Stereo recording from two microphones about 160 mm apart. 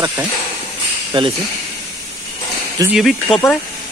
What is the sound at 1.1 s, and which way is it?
Speech, 30° right (ahead or behind).